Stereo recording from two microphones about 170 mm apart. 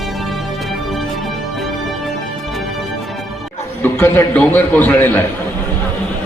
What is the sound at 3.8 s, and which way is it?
A man's voice, 10° left (ahead or behind).